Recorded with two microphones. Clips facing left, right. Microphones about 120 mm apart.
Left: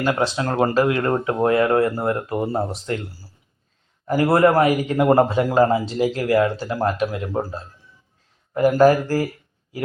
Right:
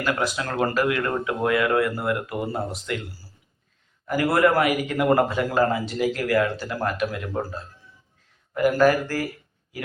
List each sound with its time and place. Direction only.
0.0 s speech: 30° left (ahead or behind)
4.0 s a man's voice: 30° left (ahead or behind)